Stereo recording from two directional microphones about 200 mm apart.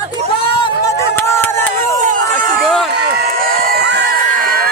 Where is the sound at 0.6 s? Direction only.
15° left (ahead or behind).